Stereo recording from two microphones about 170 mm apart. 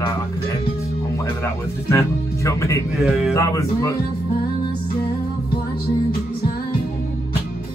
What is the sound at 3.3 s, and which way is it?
Speech, 20° left (ahead or behind).